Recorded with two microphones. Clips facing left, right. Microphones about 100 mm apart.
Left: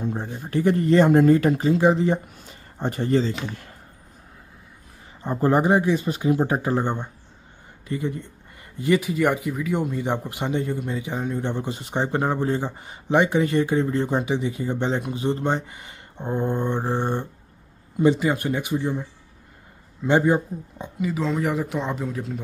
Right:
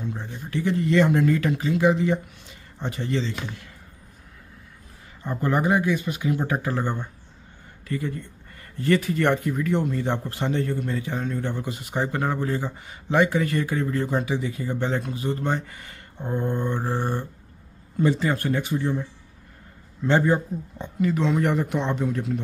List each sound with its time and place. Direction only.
0.0 s speech: 45° left (ahead or behind)
5.2 s speech: 30° left (ahead or behind)
20.1 s speech: 15° left (ahead or behind)